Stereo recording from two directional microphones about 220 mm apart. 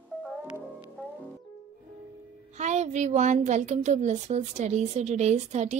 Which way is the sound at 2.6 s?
30° right (ahead or behind).